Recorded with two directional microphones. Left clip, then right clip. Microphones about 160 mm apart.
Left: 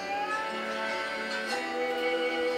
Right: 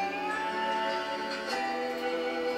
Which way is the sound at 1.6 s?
35° left (ahead or behind).